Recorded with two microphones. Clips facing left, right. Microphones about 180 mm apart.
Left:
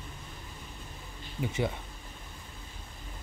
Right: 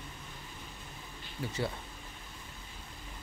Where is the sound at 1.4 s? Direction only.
15° left (ahead or behind).